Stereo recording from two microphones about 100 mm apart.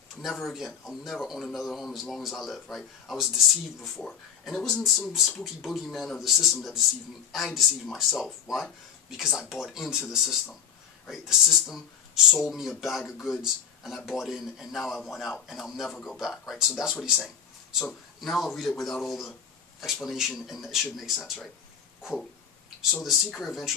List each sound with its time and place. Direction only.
0.2 s speech: centre (ahead or behind)
23.0 s speech: centre (ahead or behind)